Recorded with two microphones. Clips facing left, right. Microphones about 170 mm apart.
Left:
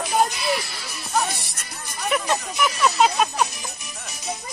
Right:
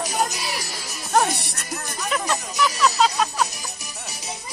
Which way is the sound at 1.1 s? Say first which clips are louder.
Right 4 dB; 65° right (ahead or behind).